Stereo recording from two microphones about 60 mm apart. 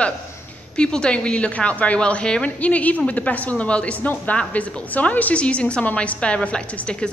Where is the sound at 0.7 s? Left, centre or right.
Centre.